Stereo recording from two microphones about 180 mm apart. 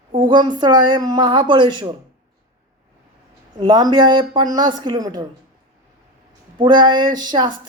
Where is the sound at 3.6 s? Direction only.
25° right (ahead or behind).